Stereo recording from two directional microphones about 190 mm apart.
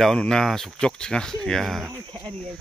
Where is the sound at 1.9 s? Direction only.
25° right (ahead or behind).